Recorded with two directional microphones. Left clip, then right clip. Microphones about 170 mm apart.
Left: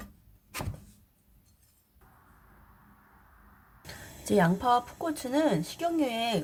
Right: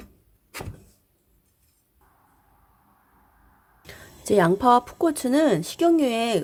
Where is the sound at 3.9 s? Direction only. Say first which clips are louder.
Right 7 dB; 40° right (ahead or behind).